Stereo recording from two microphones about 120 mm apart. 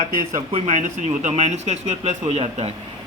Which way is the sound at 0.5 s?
75° right (ahead or behind).